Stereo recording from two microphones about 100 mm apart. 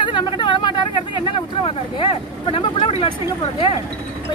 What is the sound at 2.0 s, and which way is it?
Speech, 60° left (ahead or behind).